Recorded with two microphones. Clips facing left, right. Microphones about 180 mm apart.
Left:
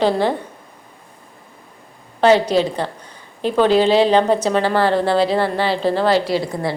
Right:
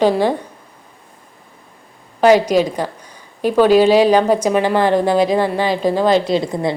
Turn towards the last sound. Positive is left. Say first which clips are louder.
# right 3 dB
turn(degrees=-20)  # may be behind; listen again after turning